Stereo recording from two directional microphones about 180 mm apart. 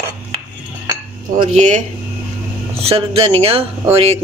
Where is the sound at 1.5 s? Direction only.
40° right (ahead or behind).